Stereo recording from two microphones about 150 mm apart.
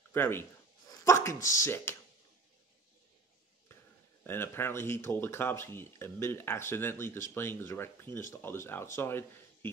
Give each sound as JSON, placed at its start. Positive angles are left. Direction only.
{"t": 0.1, "sound": "speech", "side_deg": 15}
{"t": 4.2, "sound": "speech", "side_deg": 15}